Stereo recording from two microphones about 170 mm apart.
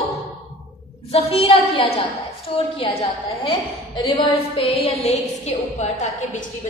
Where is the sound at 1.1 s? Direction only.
35° left (ahead or behind).